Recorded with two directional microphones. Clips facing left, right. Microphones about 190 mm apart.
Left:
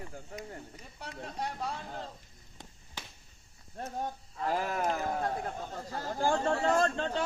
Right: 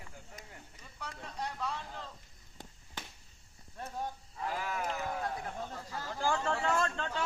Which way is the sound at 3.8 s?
50° left (ahead or behind).